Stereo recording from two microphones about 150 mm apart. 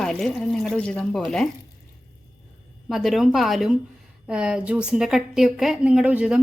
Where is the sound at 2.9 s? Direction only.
Centre (ahead or behind).